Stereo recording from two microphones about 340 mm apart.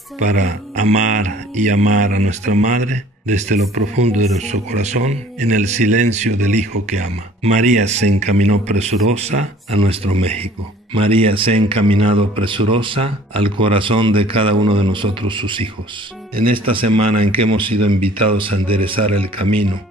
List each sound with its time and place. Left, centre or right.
0.2 s speech: right
16.8 s speech: right
17.5 s speech: centre